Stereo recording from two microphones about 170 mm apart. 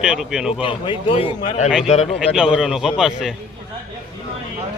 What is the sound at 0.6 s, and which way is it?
Speech, 30° left (ahead or behind).